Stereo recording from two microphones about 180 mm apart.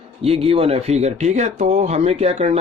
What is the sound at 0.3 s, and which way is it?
Speech, 30° right (ahead or behind).